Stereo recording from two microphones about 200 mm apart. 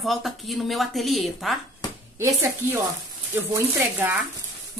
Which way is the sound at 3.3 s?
15° right (ahead or behind).